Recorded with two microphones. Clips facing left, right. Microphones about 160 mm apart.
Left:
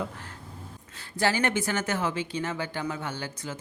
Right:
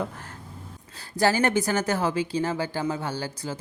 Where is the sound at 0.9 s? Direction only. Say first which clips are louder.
Right 4 dB; 40° right (ahead or behind).